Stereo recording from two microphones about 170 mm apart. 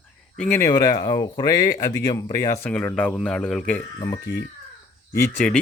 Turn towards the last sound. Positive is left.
turn(degrees=5)  # may be behind; listen again after turning